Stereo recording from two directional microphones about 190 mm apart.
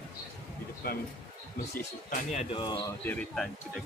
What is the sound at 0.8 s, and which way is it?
Speech, 50° left (ahead or behind).